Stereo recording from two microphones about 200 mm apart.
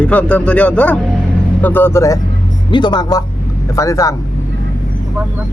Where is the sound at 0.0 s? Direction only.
5° left (ahead or behind).